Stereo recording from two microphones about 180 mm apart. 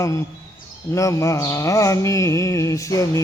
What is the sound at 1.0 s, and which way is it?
A man's voice, 15° left (ahead or behind).